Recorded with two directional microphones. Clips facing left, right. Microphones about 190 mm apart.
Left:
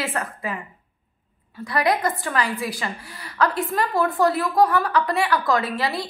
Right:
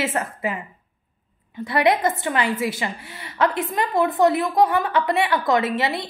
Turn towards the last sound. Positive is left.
turn(degrees=-25)  # may be behind; listen again after turning